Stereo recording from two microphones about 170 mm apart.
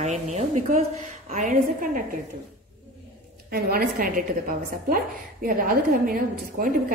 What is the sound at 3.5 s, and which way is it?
Speech, 60° right (ahead or behind).